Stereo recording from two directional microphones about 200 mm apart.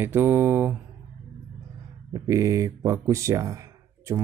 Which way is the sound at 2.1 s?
15° right (ahead or behind).